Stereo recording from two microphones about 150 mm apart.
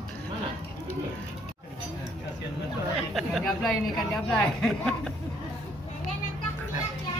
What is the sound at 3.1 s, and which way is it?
Speech, centre (ahead or behind).